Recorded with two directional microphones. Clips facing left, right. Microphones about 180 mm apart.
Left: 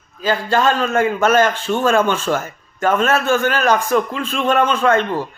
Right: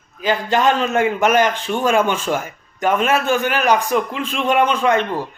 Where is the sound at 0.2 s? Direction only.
15° right (ahead or behind).